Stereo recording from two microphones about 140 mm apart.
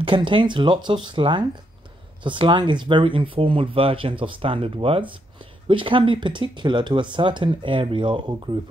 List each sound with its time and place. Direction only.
0.0 s speech: 35° right (ahead or behind)